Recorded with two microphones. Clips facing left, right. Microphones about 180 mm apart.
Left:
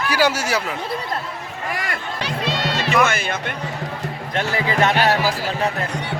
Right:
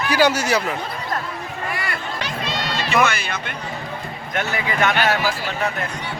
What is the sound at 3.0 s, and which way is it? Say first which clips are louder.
Speech: right 1 dB; 50° left (ahead or behind).